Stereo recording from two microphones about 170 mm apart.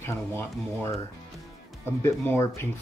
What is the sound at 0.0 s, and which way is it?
Speech, 15° left (ahead or behind).